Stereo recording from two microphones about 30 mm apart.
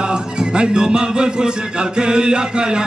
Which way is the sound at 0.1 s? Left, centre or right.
Right.